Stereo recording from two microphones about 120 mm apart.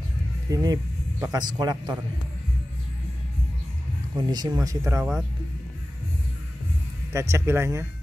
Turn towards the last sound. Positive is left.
turn(degrees=-20)  # may be behind; listen again after turning